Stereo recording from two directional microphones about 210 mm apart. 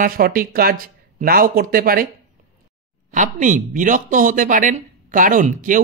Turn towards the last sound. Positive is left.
turn(degrees=-40)  # may be behind; listen again after turning